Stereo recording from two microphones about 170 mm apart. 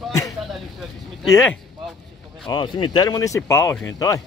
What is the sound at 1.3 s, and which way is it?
Speech, 15° left (ahead or behind).